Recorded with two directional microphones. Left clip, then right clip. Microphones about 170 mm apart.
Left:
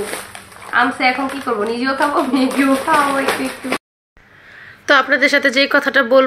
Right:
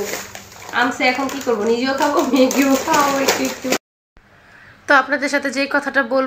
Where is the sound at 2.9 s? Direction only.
5° left (ahead or behind).